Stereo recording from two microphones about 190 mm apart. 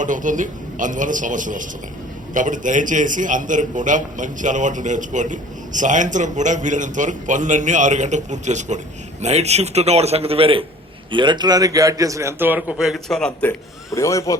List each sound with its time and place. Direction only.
0.0 s a man's voice: 40° right (ahead or behind); by 13.5 s 5° left (ahead or behind)
13.9 s a man's voice: 15° left (ahead or behind)